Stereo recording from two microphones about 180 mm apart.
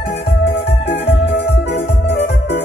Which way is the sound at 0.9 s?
70° left (ahead or behind).